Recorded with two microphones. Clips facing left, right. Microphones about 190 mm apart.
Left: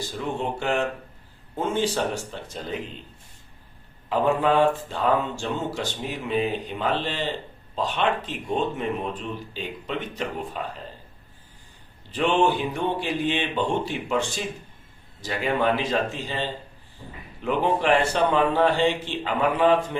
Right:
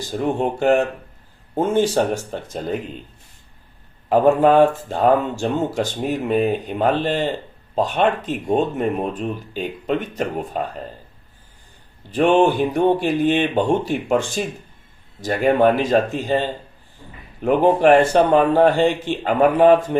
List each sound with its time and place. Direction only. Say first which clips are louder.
0.1 s speech: right 10 dB; 50° right (ahead or behind)
4.1 s speech: right 7 dB; 50° right (ahead or behind)
12.1 s speech: right 6 dB; 50° right (ahead or behind)